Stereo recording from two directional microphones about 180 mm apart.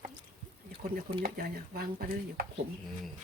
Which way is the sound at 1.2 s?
55° right (ahead or behind).